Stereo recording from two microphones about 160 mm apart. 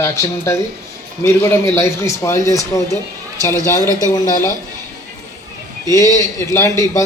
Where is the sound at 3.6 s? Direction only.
20° left (ahead or behind).